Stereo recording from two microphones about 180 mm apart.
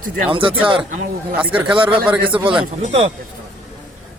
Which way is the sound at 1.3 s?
10° right (ahead or behind).